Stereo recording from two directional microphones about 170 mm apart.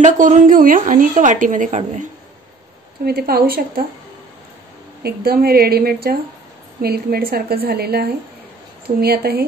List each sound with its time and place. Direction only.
0.0 s a woman's voice: 50° right (ahead or behind)
3.1 s a woman's voice: 65° right (ahead or behind)
5.0 s a woman's voice: 65° right (ahead or behind)